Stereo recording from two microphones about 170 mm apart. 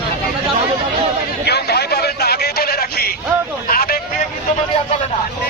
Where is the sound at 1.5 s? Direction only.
75° left (ahead or behind).